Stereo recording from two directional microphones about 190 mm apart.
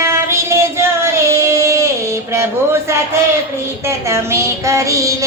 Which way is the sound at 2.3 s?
15° right (ahead or behind).